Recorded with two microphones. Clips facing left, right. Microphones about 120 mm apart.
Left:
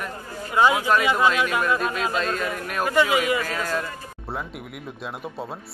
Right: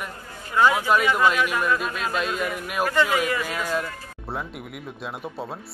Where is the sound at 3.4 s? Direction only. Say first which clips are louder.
Even; 10° right (ahead or behind).